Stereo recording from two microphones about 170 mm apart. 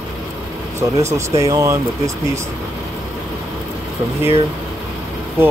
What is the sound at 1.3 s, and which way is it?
Speech, 20° right (ahead or behind).